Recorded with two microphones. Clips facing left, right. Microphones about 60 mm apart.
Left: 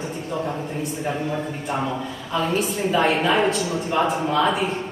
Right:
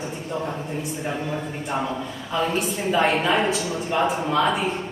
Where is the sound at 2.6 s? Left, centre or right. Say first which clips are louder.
Left 1 dB; centre.